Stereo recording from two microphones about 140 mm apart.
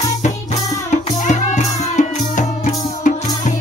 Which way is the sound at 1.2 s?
60° left (ahead or behind).